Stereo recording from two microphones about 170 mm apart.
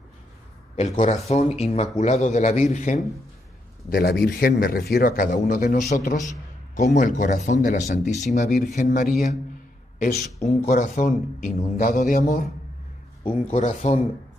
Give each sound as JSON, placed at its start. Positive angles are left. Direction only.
{"t": 0.7, "sound": "speech", "side_deg": 45}
{"t": 3.9, "sound": "a man's voice", "side_deg": 65}
{"t": 10.4, "sound": "a man's voice", "side_deg": 40}
{"t": 13.5, "sound": "a man's voice", "side_deg": 40}